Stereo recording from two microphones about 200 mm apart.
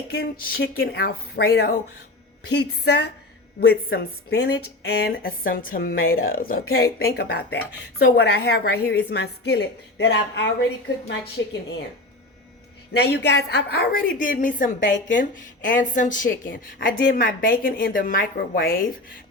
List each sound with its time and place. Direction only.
0.1 s a woman's voice: 50° left (ahead or behind)
12.9 s a woman's voice: 55° left (ahead or behind)